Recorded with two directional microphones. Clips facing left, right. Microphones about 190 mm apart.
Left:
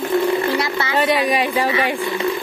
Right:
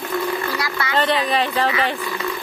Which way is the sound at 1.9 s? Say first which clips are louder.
Left 5 dB; 25° left (ahead or behind).